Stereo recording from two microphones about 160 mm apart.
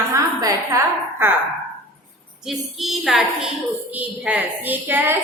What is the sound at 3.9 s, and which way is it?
A woman's voice, 10° right (ahead or behind).